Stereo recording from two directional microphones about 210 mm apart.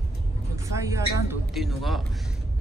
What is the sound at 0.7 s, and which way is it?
Speech, 15° right (ahead or behind).